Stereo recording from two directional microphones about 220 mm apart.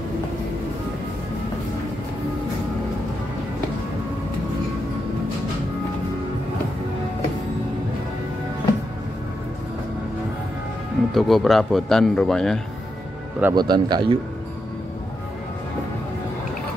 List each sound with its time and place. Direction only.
11.1 s speech: centre (ahead or behind)
13.4 s speech: 15° right (ahead or behind)